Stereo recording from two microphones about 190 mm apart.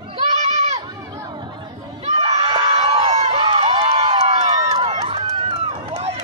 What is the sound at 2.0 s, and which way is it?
Crowd, 30° right (ahead or behind).